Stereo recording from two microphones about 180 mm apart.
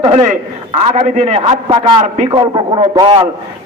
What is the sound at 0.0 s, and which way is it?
A man's voice, 40° right (ahead or behind).